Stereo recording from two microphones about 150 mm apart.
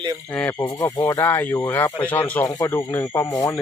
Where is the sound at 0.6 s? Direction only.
20° left (ahead or behind).